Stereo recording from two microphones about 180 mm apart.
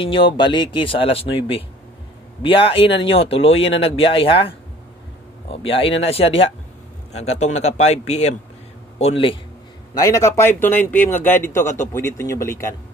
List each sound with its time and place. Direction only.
0.0 s speech: 30° left (ahead or behind)
9.9 s a man's voice: 20° left (ahead or behind)